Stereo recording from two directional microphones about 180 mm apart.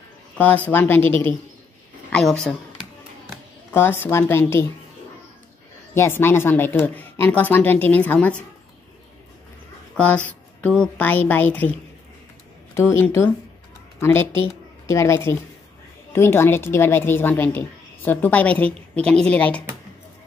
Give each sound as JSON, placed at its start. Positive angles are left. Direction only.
{"t": 0.4, "sound": "a woman's voice", "side_deg": 10}
{"t": 2.1, "sound": "speech", "side_deg": 5}
{"t": 3.7, "sound": "a woman's voice", "side_deg": 15}
{"t": 5.9, "sound": "a woman's voice", "side_deg": 10}
{"t": 9.9, "sound": "a woman's voice", "side_deg": 5}
{"t": 12.7, "sound": "a woman's voice", "side_deg": 15}